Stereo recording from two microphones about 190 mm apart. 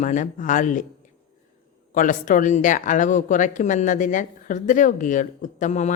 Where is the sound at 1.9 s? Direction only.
45° left (ahead or behind).